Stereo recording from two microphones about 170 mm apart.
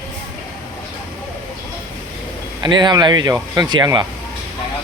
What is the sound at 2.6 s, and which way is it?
Speech, 25° right (ahead or behind).